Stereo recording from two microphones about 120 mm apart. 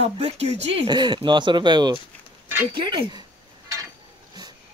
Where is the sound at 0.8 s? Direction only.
40° right (ahead or behind).